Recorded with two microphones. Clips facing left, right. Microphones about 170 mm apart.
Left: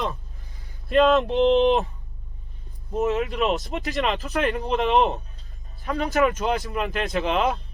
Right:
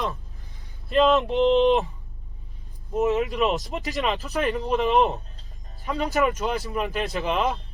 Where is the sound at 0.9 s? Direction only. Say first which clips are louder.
Left 1 dB; centre (ahead or behind).